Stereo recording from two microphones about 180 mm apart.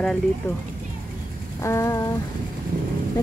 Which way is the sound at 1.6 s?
15° left (ahead or behind).